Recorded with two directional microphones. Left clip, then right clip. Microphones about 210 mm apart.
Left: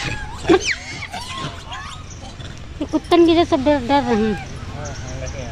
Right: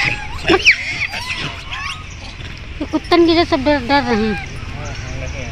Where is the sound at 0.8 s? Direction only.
50° left (ahead or behind).